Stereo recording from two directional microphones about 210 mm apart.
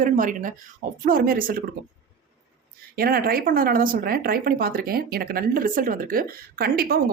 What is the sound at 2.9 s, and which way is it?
Speech, 45° right (ahead or behind).